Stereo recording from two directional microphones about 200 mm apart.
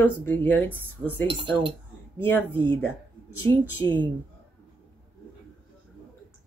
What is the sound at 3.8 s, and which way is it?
Speech, 10° left (ahead or behind).